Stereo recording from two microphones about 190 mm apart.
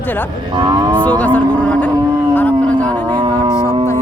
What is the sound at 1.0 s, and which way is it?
Speech, 10° left (ahead or behind).